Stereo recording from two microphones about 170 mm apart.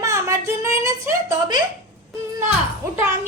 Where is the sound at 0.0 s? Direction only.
20° right (ahead or behind).